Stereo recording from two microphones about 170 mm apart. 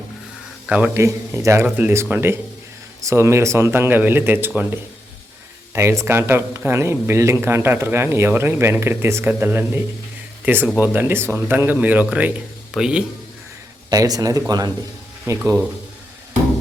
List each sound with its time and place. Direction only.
0.7 s speech: 10° right (ahead or behind)
13.9 s speech: 20° right (ahead or behind)